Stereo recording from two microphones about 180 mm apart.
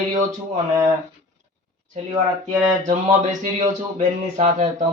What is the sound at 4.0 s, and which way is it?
Speech, 40° right (ahead or behind).